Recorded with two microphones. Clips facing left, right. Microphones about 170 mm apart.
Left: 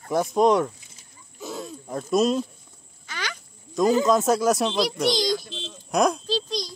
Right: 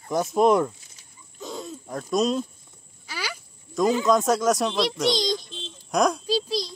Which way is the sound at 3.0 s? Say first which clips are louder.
Even; 10° right (ahead or behind).